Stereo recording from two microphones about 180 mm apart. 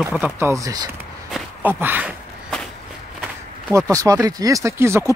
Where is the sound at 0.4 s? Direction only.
15° right (ahead or behind).